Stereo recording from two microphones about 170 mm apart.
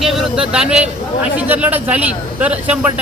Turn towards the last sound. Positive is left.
turn(degrees=-10)  # may be behind; listen again after turning